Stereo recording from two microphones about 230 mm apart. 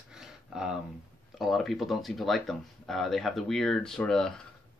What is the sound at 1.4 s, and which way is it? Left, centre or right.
Speech, centre.